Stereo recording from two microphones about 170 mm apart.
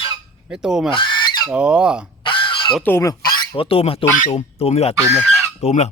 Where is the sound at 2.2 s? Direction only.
30° left (ahead or behind).